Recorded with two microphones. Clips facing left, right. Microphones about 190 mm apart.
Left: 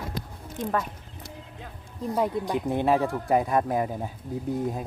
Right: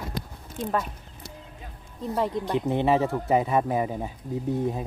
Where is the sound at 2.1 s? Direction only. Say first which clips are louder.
Even; 5° left (ahead or behind).